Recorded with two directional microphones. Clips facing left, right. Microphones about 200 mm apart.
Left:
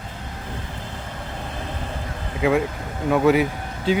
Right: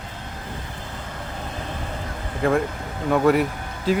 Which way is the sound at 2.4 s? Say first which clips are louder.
Left 1 dB; 5° left (ahead or behind).